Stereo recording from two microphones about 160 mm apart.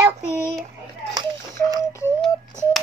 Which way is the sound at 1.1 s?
25° right (ahead or behind).